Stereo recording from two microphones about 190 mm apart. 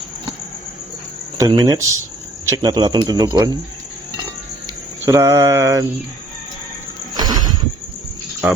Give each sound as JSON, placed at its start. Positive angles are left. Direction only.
{"t": 1.4, "sound": "speech", "side_deg": -20}
{"t": 5.0, "sound": "mantra", "side_deg": -15}
{"t": 7.1, "sound": "horse", "side_deg": -20}